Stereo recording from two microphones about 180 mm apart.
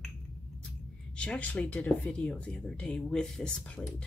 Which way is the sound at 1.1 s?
5° left (ahead or behind).